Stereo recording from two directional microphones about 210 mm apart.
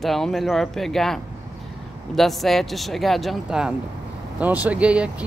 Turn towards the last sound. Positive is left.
turn(degrees=-5)  # may be behind; listen again after turning